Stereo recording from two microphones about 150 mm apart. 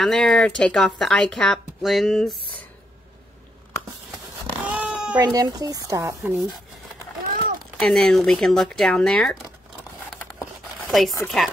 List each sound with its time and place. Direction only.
0.0 s speech: 5° left (ahead or behind)
4.6 s a sound: 10° right (ahead or behind)
5.2 s speech: 25° right (ahead or behind)
7.8 s speech: 5° left (ahead or behind)
10.9 s speech: centre (ahead or behind)